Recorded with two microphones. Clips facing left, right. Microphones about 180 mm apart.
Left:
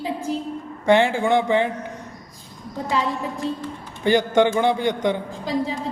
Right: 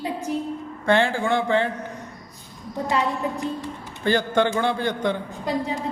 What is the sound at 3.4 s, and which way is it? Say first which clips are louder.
Speech: left 2 dB; 30° left (ahead or behind).